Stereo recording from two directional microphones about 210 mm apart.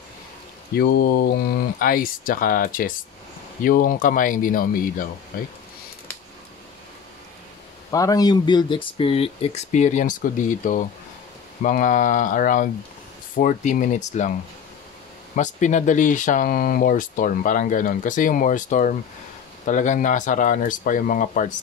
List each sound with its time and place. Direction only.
0.7 s speech: 45° left (ahead or behind)
7.9 s speech: 15° left (ahead or behind); by 14.3 s 35° left (ahead or behind)
15.3 s speech: 35° left (ahead or behind)